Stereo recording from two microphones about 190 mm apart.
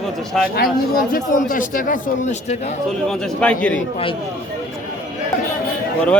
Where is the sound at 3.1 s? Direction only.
5° left (ahead or behind).